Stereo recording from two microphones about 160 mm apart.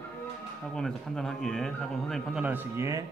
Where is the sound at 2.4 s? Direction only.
15° right (ahead or behind).